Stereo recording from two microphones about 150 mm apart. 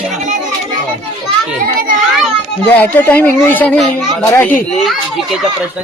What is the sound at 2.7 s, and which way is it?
Speech, 10° left (ahead or behind).